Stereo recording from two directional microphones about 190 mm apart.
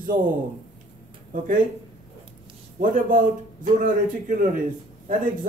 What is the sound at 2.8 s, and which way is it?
A man's voice, 45° right (ahead or behind).